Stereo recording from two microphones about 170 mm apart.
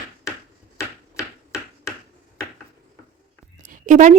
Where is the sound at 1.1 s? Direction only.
15° left (ahead or behind).